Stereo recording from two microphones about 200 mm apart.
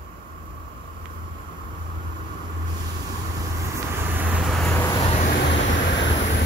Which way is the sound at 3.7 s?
10° right (ahead or behind).